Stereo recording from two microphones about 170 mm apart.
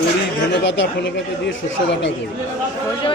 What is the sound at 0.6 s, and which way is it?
Speech, 90° left.